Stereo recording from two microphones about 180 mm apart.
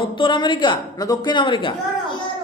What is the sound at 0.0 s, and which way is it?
A woman's voice, 25° left (ahead or behind).